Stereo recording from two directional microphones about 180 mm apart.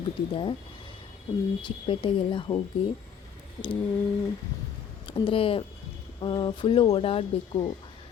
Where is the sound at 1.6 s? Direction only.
25° left (ahead or behind).